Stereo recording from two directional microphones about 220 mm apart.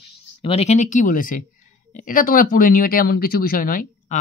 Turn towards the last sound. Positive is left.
turn(degrees=40)  # may be behind; listen again after turning